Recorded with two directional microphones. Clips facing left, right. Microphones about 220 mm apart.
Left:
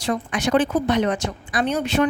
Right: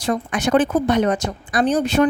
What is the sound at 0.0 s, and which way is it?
A woman's voice, 50° right (ahead or behind).